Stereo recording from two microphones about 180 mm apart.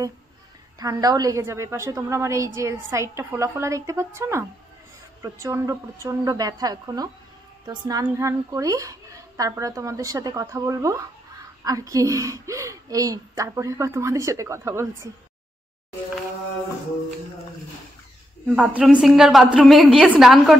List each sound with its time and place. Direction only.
0.7 s a woman's voice: 20° right (ahead or behind)
18.5 s a man's voice: 5° right (ahead or behind)